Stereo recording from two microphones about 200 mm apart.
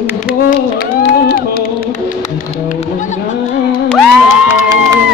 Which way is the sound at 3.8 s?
5° left (ahead or behind).